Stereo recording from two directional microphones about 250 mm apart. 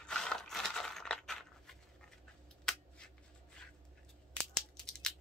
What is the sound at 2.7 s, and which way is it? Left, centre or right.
Shuffling cards, centre.